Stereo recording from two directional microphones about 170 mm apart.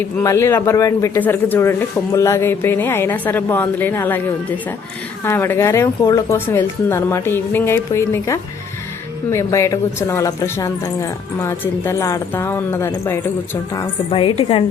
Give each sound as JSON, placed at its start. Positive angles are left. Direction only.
{"t": 0.2, "sound": "a man's voice", "side_deg": 20}
{"t": 5.2, "sound": "a man's voice", "side_deg": 15}
{"t": 14.1, "sound": "a woman's voice", "side_deg": 30}